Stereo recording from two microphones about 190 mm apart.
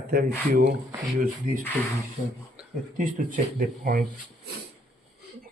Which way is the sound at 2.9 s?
45° right (ahead or behind).